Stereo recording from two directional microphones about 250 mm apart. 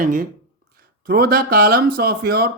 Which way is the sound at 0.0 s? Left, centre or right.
Right.